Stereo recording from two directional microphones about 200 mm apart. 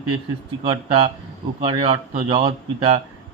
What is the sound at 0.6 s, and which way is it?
A man's voice, 25° right (ahead or behind).